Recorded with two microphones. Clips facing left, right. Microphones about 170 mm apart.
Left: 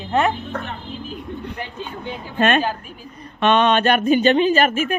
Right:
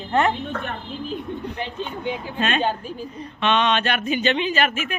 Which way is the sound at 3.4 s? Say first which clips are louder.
Left 5 dB; 45° left (ahead or behind).